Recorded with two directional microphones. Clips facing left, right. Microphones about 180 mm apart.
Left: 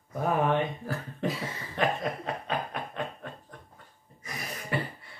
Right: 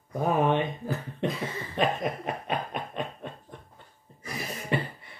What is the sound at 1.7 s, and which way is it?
Snicker, 20° right (ahead or behind).